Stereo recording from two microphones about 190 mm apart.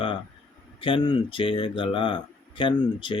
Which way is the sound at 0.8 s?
25° left (ahead or behind).